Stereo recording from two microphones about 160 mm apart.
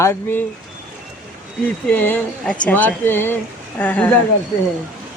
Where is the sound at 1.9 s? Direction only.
10° left (ahead or behind).